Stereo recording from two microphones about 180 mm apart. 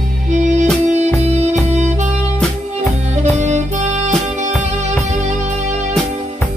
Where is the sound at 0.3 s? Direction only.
40° right (ahead or behind).